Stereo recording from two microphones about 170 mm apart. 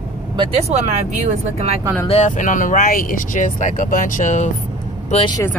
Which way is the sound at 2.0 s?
45° left (ahead or behind).